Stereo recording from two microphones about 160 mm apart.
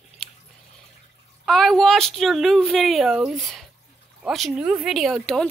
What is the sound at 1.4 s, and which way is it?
A woman's voice, centre (ahead or behind).